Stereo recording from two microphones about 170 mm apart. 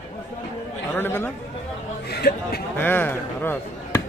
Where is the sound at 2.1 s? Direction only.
70° left (ahead or behind).